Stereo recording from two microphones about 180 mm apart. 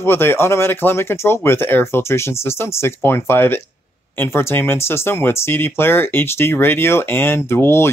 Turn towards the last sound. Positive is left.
turn(degrees=15)  # may be behind; listen again after turning